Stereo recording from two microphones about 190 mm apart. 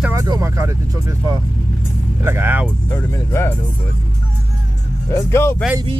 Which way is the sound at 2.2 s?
10° right (ahead or behind).